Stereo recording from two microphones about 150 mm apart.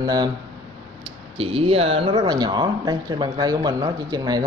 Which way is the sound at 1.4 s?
40° right (ahead or behind).